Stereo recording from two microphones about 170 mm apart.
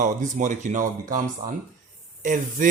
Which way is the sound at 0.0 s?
45° right (ahead or behind).